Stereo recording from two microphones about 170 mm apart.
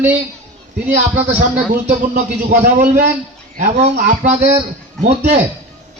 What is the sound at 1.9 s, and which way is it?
A man's voice, 50° right (ahead or behind).